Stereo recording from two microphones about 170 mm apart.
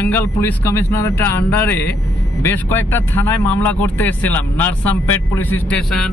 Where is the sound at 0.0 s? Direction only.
10° left (ahead or behind).